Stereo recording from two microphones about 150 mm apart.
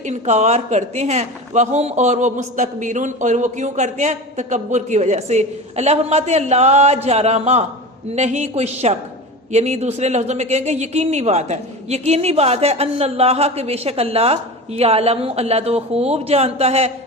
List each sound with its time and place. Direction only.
0.0 s a man's voice: 50° right (ahead or behind)